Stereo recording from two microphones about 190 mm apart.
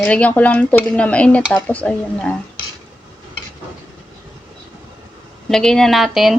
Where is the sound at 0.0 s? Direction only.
5° left (ahead or behind).